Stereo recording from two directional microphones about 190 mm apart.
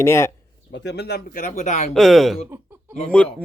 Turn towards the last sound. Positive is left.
turn(degrees=5)  # may be behind; listen again after turning